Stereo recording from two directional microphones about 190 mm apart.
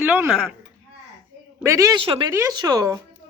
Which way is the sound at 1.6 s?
15° right (ahead or behind).